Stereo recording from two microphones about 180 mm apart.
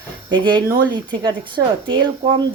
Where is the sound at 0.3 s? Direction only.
25° right (ahead or behind).